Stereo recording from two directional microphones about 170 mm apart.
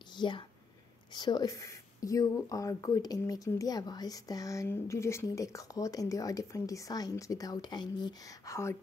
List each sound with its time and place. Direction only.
0.1 s speech: 25° left (ahead or behind)